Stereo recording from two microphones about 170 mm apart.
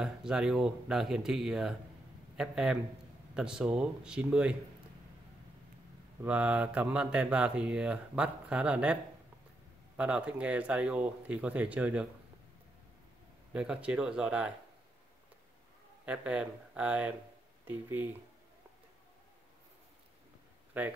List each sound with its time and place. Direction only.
0.0 s speech: 5° right (ahead or behind)
6.2 s speech: 5° right (ahead or behind)
9.9 s speech: 5° right (ahead or behind)
13.5 s speech: 5° right (ahead or behind)
16.1 s speech: 5° right (ahead or behind)
20.7 s speech: 10° right (ahead or behind)